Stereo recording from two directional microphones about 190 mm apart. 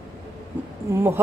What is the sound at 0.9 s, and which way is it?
Speech, 15° right (ahead or behind).